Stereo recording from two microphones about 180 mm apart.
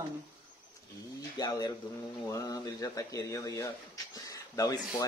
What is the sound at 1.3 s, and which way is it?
Speech, 20° left (ahead or behind).